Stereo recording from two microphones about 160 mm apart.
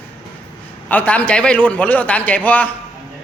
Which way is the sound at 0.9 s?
10° left (ahead or behind).